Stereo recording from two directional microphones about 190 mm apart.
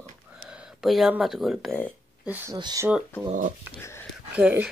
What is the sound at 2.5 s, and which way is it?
Speech, 20° right (ahead or behind).